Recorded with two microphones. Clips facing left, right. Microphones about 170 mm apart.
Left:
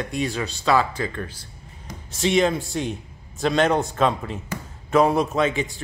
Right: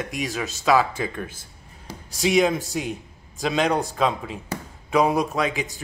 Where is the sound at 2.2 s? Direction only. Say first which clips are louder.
Even; 5° right (ahead or behind).